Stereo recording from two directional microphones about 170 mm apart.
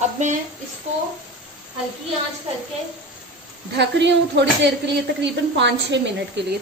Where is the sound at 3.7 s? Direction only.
90° right.